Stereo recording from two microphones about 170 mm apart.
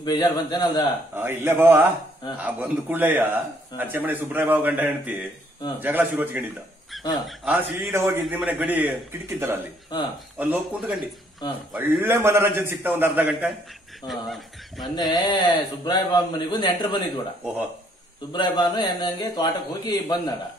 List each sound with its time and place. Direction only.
0.0 s a man's voice: 25° left (ahead or behind)
1.1 s a man's voice: 15° right (ahead or behind)
10.3 s a man's voice: 10° right (ahead or behind)
15.0 s a man's voice: 25° left (ahead or behind)
18.3 s a man's voice: 25° left (ahead or behind)